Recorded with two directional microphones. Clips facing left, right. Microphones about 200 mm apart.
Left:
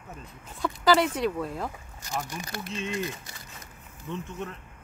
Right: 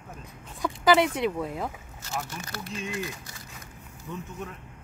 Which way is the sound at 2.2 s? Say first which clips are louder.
Left 2 dB; 15° left (ahead or behind).